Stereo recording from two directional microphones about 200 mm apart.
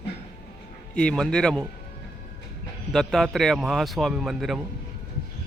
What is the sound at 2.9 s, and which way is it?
Speech, centre (ahead or behind).